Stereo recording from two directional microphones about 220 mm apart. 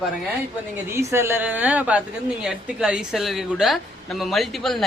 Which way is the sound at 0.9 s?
10° right (ahead or behind).